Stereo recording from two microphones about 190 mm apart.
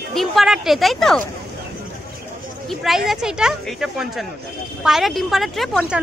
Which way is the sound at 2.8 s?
Centre (ahead or behind).